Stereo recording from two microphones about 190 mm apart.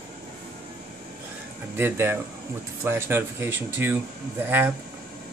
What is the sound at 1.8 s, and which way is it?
Speech, 10° right (ahead or behind).